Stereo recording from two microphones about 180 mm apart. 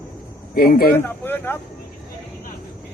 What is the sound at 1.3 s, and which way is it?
Speech, 10° left (ahead or behind).